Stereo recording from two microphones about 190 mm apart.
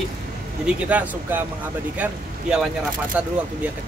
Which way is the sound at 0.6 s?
5° right (ahead or behind).